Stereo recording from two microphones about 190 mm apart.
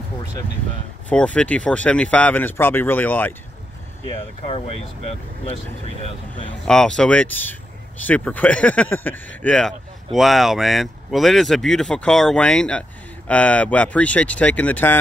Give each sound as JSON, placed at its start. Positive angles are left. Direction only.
{"t": 1.0, "sound": "speech", "side_deg": 5}
{"t": 4.5, "sound": "speech", "side_deg": 30}
{"t": 6.6, "sound": "speech", "side_deg": 5}